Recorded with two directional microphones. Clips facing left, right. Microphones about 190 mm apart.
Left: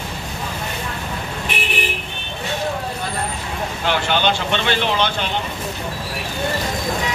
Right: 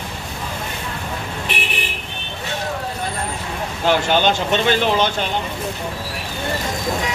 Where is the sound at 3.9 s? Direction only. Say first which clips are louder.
Right 3 dB; 45° right (ahead or behind).